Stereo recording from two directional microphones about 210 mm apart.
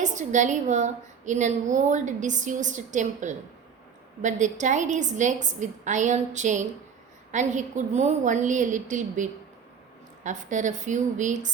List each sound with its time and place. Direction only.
0.0 s a woman's voice: 35° right (ahead or behind)